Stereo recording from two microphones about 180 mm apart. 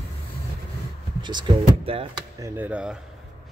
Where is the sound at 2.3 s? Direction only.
15° right (ahead or behind).